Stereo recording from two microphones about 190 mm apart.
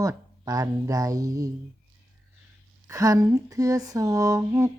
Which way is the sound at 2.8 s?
20° right (ahead or behind).